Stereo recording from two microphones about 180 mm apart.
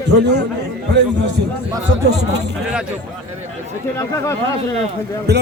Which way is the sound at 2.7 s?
5° right (ahead or behind).